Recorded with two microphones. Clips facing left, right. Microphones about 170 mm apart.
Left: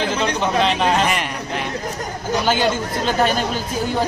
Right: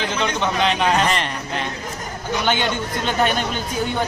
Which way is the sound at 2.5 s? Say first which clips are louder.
Left 3 dB; 35° left (ahead or behind).